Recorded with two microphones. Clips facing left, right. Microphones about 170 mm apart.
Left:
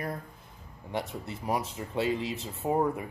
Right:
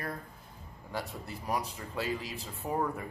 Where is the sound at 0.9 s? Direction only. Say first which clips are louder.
Left 4 dB; 25° left (ahead or behind).